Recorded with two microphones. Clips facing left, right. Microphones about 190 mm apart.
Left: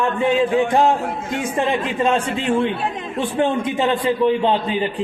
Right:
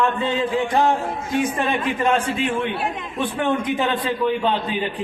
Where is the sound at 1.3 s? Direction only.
25° left (ahead or behind).